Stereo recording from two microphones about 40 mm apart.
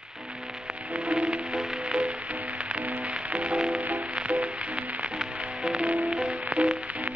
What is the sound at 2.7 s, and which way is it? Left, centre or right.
Music, right.